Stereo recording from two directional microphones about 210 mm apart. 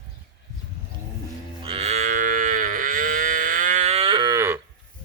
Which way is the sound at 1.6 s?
30° right (ahead or behind).